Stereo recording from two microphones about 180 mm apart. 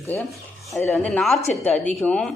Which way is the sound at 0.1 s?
10° left (ahead or behind).